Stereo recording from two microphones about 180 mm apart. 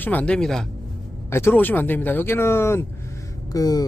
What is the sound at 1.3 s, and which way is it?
Speech, 15° left (ahead or behind).